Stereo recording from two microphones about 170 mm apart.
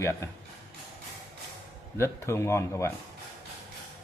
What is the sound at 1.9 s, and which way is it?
Speech, 15° left (ahead or behind).